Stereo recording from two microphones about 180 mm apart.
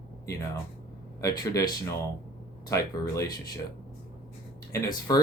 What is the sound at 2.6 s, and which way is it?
Speech, 20° left (ahead or behind).